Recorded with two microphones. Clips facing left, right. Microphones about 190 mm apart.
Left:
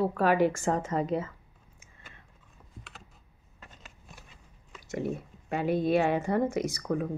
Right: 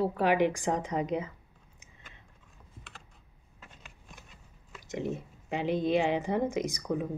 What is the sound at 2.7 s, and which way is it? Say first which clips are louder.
Computer keyboard: left 2 dB; centre (ahead or behind).